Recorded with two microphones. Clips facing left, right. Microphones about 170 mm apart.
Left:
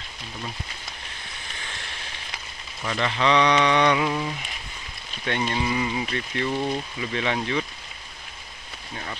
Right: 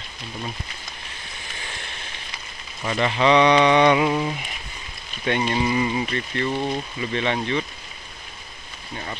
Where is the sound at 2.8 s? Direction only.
15° right (ahead or behind).